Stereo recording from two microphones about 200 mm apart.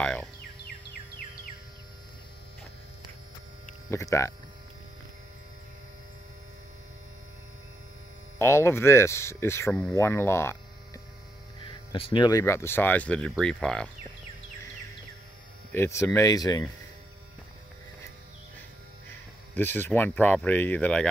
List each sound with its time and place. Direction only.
0.0 s speech: 5° left (ahead or behind)
3.9 s speech: 15° left (ahead or behind)
8.4 s speech: 10° left (ahead or behind)
11.6 s speech: 25° left (ahead or behind); by 13.8 s 5° left (ahead or behind)
15.7 s speech: 15° left (ahead or behind)
19.0 s speech: 10° left (ahead or behind)